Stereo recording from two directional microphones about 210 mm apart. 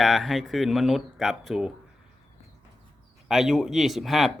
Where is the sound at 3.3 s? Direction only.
Centre (ahead or behind).